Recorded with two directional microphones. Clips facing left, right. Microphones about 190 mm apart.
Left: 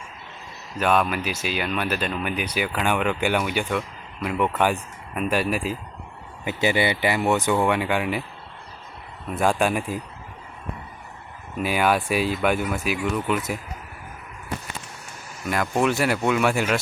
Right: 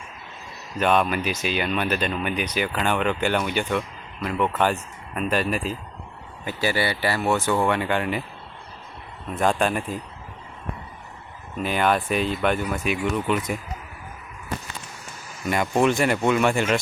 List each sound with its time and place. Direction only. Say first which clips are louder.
0.8 s speech: right 1 dB; 5° left (ahead or behind)
7.5 s speech: left 1 dB; 5° left (ahead or behind)
9.3 s speech: left 1 dB; 5° left (ahead or behind)
11.6 s speech: even; 5° left (ahead or behind)
15.4 s speech: right 2 dB; centre (ahead or behind)